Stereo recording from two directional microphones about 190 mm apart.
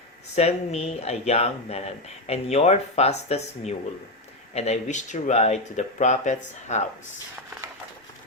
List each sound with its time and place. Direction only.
0.3 s speech: 35° left (ahead or behind)